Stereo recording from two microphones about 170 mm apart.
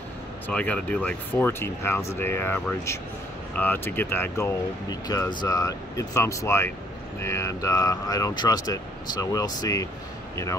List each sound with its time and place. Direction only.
0.5 s speech: 5° left (ahead or behind)